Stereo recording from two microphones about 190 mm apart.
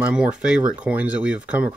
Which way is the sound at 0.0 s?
5° right (ahead or behind).